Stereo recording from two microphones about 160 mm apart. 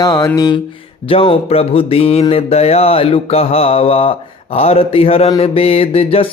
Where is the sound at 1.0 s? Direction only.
35° left (ahead or behind).